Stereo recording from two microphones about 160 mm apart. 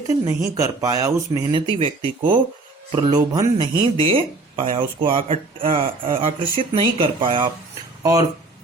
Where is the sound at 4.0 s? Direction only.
35° right (ahead or behind).